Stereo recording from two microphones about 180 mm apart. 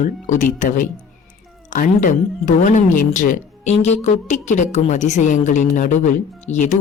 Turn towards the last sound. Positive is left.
turn(degrees=40)  # may be behind; listen again after turning